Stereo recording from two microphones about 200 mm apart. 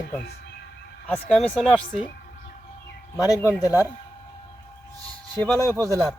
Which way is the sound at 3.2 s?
15° left (ahead or behind).